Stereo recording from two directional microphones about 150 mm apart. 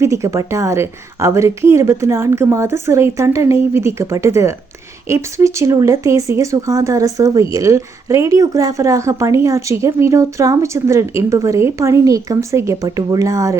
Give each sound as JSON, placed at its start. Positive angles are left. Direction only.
{"t": 0.0, "sound": "speech", "side_deg": -20}